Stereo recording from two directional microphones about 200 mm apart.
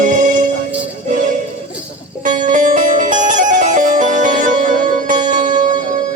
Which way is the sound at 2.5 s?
40° right (ahead or behind).